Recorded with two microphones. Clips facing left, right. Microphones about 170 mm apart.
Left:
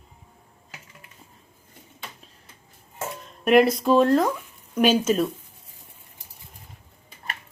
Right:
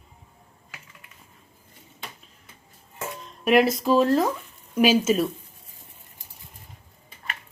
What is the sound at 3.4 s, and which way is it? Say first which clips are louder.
Speech: left 2 dB; centre (ahead or behind).